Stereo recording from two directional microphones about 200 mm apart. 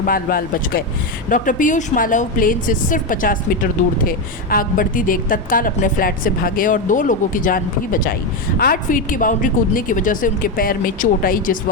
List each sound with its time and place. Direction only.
0.0 s a woman's voice: 45° left (ahead or behind)